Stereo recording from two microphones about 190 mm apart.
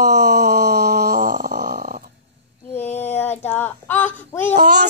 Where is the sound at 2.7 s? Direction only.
10° left (ahead or behind).